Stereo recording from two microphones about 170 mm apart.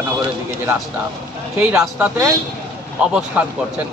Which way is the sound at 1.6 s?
10° right (ahead or behind).